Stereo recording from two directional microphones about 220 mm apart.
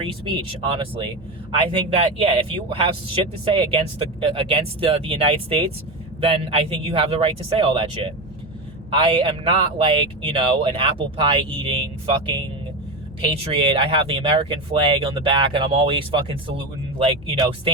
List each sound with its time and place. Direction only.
0.0 s speech: 25° right (ahead or behind)
13.5 s speech: 25° right (ahead or behind)